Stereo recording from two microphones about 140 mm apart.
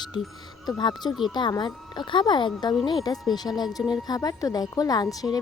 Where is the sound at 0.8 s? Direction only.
30° left (ahead or behind).